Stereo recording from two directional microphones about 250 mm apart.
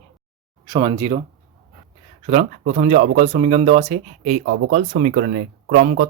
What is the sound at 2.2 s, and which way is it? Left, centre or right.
Speech, right.